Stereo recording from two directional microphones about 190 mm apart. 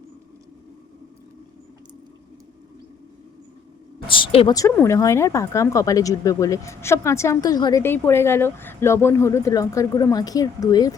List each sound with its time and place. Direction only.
4.0 s a woman's voice: 25° left (ahead or behind)
4.5 s speech: 15° left (ahead or behind)